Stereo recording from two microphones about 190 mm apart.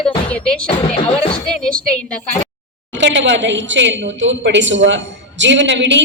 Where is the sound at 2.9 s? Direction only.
70° right (ahead or behind).